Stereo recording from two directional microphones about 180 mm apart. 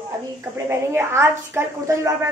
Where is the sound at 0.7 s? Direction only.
15° right (ahead or behind).